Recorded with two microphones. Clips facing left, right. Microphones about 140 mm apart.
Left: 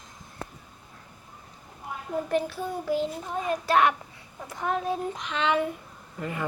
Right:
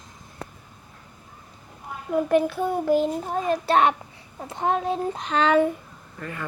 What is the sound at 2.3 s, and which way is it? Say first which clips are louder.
Child singing: right 7 dB; 55° right (ahead or behind).